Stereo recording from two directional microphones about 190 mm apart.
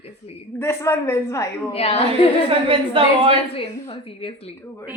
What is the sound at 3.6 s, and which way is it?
Speech, 30° left (ahead or behind).